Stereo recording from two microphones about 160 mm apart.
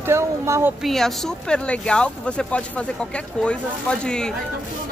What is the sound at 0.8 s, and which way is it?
Speech, centre (ahead or behind).